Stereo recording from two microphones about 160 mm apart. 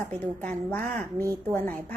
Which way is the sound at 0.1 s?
10° left (ahead or behind).